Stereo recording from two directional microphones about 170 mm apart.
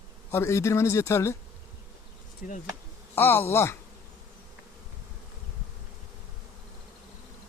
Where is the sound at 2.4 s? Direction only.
50° left (ahead or behind).